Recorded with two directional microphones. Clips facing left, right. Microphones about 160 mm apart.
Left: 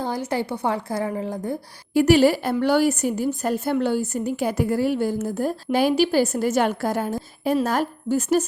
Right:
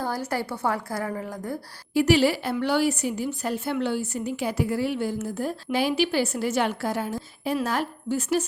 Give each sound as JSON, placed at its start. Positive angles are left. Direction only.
{"t": 0.0, "sound": "a woman's voice", "side_deg": 20}
{"t": 1.9, "sound": "a woman's voice", "side_deg": 50}